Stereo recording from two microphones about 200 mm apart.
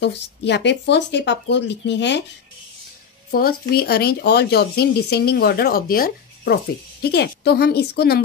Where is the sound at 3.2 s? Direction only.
45° left (ahead or behind).